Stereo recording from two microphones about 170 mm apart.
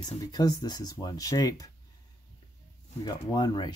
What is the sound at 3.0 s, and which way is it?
Speech, 25° left (ahead or behind).